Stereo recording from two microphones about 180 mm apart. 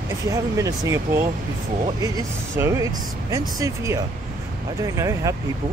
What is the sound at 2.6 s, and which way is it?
Speech, 15° right (ahead or behind).